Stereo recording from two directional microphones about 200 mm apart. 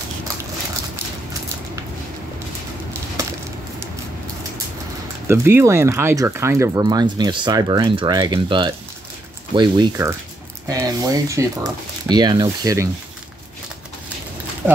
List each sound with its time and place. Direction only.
5.3 s speech: 10° right (ahead or behind)